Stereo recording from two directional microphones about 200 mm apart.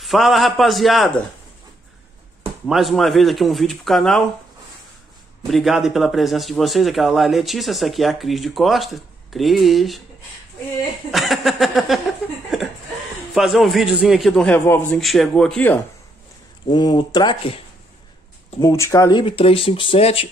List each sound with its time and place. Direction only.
0.0 s speech: centre (ahead or behind)
2.6 s speech: centre (ahead or behind)
5.5 s speech: centre (ahead or behind)
11.1 s a sound: centre (ahead or behind)
13.3 s speech: centre (ahead or behind)
16.7 s speech: 20° left (ahead or behind)
18.6 s speech: 15° left (ahead or behind)